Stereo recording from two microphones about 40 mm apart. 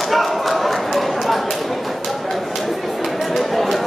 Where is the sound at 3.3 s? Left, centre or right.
Centre.